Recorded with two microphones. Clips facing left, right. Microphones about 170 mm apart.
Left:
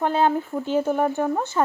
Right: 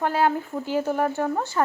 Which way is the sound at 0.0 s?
20° left (ahead or behind).